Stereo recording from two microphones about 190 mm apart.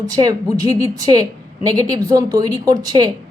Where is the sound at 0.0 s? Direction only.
20° right (ahead or behind).